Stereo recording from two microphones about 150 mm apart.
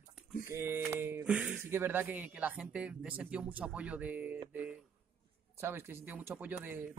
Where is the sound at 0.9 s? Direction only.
15° right (ahead or behind).